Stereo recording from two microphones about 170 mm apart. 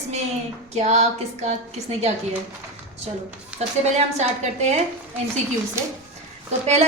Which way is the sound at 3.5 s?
5° right (ahead or behind).